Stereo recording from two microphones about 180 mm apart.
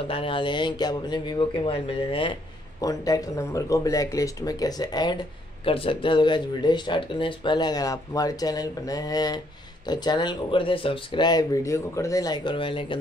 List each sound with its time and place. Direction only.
0.1 s speech: 30° left (ahead or behind)
2.8 s speech: 20° left (ahead or behind)